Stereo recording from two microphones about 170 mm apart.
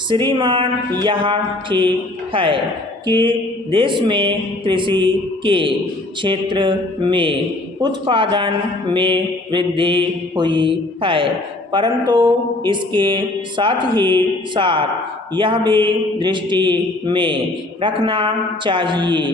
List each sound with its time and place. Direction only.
0.1 s speech: 25° right (ahead or behind)